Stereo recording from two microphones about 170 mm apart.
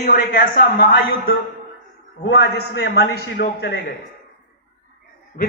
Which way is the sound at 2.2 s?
85° left.